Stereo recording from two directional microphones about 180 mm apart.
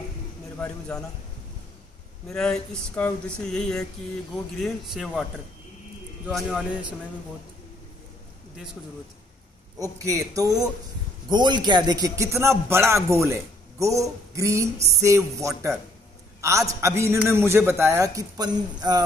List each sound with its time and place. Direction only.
0.6 s a man's voice: 5° left (ahead or behind)
2.2 s speech: 5° left (ahead or behind)
6.2 s speech: 5° right (ahead or behind)
9.8 s a man's voice: 20° right (ahead or behind)
16.3 s a sound: 15° right (ahead or behind)
16.8 s a man's voice: 15° right (ahead or behind)